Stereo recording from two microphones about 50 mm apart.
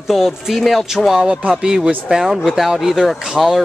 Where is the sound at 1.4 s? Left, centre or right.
Centre.